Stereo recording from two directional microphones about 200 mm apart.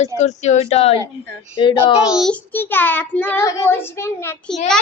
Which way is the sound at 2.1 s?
Centre (ahead or behind).